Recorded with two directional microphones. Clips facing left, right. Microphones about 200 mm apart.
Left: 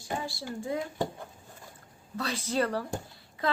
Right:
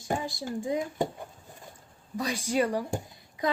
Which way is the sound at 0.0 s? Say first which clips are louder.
Right 4 dB; 20° right (ahead or behind).